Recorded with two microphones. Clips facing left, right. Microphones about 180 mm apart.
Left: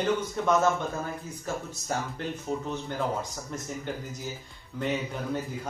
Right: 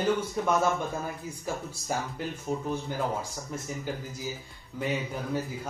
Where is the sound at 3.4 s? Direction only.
5° right (ahead or behind).